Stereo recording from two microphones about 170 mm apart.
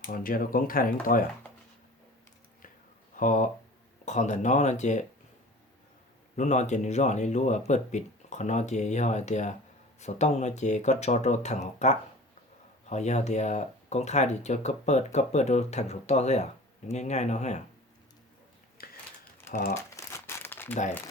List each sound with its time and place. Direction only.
0.1 s speech: 55° left (ahead or behind)
3.2 s speech: 50° left (ahead or behind)
6.3 s speech: 45° left (ahead or behind)
18.8 s a sound: 60° left (ahead or behind)
20.0 s crumpling: 15° left (ahead or behind)